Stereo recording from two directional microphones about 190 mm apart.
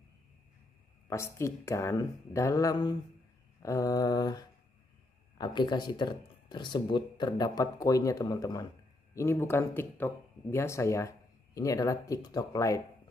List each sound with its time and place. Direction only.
1.0 s speech: 15° left (ahead or behind)